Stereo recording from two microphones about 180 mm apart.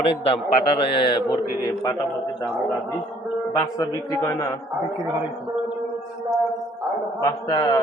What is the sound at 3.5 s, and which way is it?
Speech, 15° left (ahead or behind).